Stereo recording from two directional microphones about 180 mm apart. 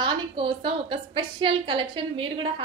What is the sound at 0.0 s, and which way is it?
A woman's voice, 25° right (ahead or behind).